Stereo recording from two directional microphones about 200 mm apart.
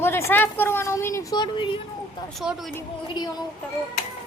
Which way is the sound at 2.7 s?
20° left (ahead or behind).